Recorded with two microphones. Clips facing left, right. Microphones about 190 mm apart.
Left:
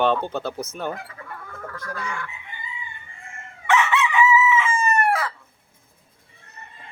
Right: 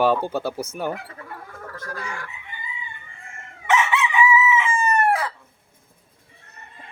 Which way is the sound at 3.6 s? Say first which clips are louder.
Left 1 dB; 15° right (ahead or behind).